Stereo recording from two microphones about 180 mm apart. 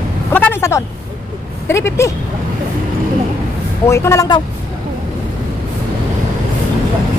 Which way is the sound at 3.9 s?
15° left (ahead or behind).